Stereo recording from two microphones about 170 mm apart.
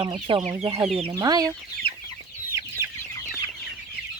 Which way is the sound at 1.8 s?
35° right (ahead or behind).